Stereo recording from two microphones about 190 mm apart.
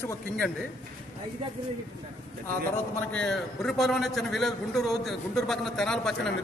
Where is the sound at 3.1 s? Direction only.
5° left (ahead or behind).